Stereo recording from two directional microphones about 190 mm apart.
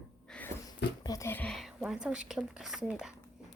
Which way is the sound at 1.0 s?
15° left (ahead or behind).